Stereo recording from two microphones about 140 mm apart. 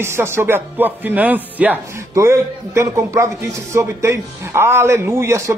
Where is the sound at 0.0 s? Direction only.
20° right (ahead or behind).